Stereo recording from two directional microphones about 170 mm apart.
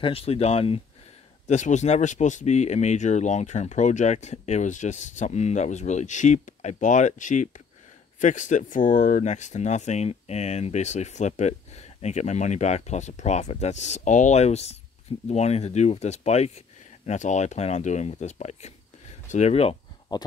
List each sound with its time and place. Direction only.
0.0 s speech: 35° left (ahead or behind)